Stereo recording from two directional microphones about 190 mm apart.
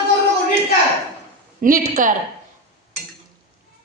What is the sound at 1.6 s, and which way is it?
Speech, 45° right (ahead or behind).